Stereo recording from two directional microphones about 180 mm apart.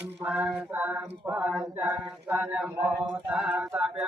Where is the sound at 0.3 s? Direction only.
5° right (ahead or behind).